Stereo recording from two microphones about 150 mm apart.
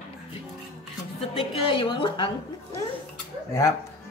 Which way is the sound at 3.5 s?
20° left (ahead or behind).